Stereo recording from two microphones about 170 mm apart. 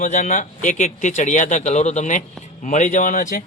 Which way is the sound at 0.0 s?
50° left (ahead or behind).